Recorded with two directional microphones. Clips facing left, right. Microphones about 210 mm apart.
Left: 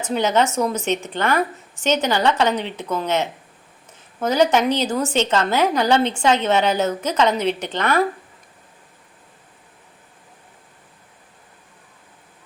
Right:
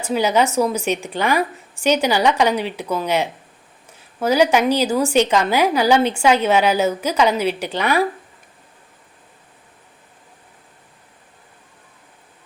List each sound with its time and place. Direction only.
0.0 s a woman's voice: 10° right (ahead or behind)